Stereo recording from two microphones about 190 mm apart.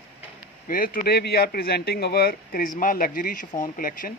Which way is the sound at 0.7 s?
45° left (ahead or behind).